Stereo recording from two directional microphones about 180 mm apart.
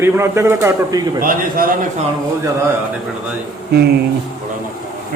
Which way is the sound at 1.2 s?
55° right (ahead or behind).